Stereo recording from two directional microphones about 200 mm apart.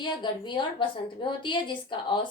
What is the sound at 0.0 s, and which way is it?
A woman's voice, 25° left (ahead or behind).